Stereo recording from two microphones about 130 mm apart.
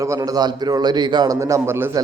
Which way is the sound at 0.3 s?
30° right (ahead or behind).